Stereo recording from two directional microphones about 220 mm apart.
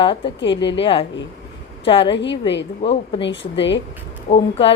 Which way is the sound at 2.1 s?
55° left (ahead or behind).